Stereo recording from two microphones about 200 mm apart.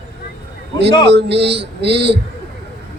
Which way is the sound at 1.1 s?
60° right (ahead or behind).